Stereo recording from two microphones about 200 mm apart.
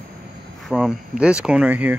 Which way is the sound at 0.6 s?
5° right (ahead or behind).